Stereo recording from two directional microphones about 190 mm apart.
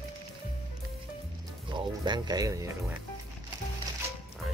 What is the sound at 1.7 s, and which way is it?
Speech, 25° right (ahead or behind).